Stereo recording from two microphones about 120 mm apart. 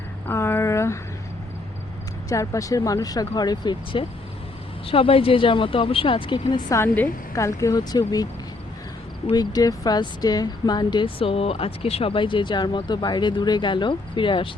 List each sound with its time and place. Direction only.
0.3 s a sound: 20° left (ahead or behind)
2.3 s speech: 25° left (ahead or behind)
4.9 s speech: 50° left (ahead or behind)
6.7 s a woman's voice: 15° left (ahead or behind)
7.3 s speech: 25° left (ahead or behind)
9.3 s speech: 35° left (ahead or behind)